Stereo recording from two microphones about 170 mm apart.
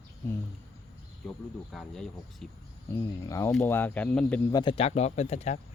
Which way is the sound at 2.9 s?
15° left (ahead or behind).